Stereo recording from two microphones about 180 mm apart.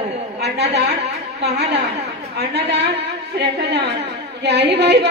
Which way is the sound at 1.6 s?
65° right (ahead or behind).